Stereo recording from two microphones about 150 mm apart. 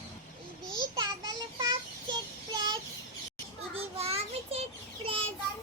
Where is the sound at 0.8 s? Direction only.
25° right (ahead or behind).